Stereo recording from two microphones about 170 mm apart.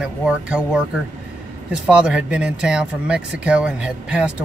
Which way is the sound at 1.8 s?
5° right (ahead or behind).